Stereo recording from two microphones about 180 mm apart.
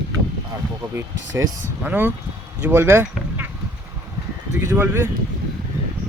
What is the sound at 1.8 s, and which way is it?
Speech, 10° right (ahead or behind).